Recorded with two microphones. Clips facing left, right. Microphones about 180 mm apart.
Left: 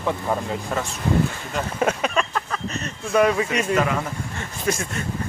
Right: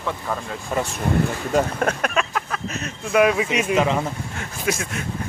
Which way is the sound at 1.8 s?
Centre (ahead or behind).